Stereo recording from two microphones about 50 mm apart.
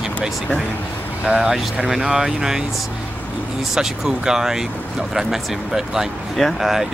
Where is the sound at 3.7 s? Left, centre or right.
Centre.